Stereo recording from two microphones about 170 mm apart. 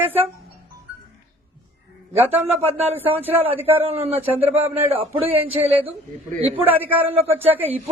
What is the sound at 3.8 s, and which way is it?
Speech, 35° right (ahead or behind).